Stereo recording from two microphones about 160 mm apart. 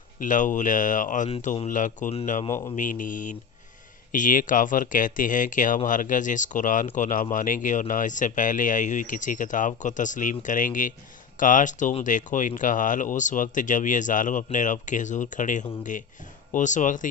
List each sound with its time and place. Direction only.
0.2 s speech: 55° left (ahead or behind)